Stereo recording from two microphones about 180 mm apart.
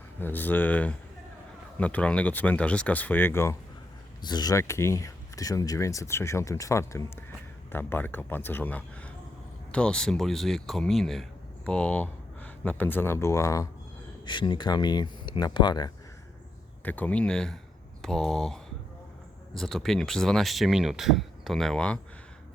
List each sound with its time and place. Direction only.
0.2 s speech: 10° left (ahead or behind)
16.8 s speech: 10° left (ahead or behind)